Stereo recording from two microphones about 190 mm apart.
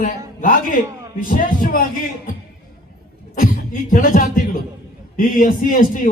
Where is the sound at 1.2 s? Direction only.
45° left (ahead or behind).